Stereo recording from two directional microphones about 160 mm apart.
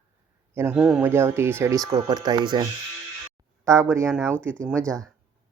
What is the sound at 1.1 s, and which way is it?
Speech, 15° right (ahead or behind).